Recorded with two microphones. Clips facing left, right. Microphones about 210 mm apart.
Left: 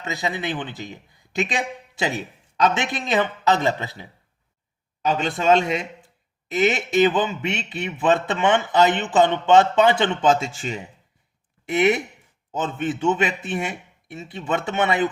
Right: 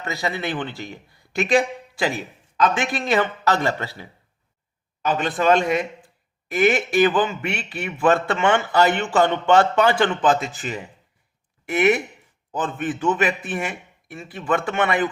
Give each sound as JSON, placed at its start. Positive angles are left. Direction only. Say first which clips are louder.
{"t": 0.0, "sound": "a man's voice", "louder": "right 1 dB", "side_deg": 20}
{"t": 5.0, "sound": "a man's voice", "louder": "even", "side_deg": 25}